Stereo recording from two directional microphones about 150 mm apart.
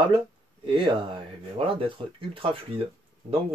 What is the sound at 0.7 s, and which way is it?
Speech, 35° right (ahead or behind).